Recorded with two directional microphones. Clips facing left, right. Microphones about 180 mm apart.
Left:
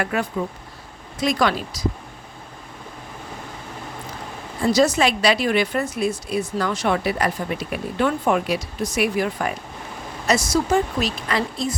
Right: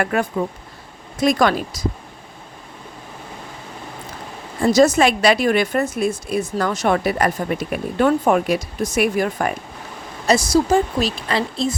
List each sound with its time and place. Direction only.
0.0 s a woman's voice: 50° right (ahead or behind)
4.6 s a woman's voice: 50° right (ahead or behind)
10.2 s a woman's voice: 35° right (ahead or behind)